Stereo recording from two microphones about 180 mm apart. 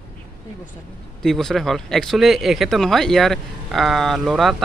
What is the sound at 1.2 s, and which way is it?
Speech, centre (ahead or behind).